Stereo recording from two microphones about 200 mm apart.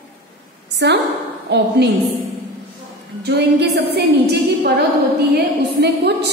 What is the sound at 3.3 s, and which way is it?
A woman's voice, 55° right (ahead or behind).